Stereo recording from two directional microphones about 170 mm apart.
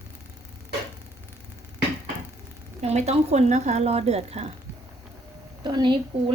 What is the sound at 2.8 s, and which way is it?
Speech, 40° right (ahead or behind).